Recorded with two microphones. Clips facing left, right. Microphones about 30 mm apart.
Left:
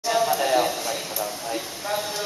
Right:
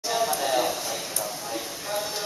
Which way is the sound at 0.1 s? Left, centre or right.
Centre.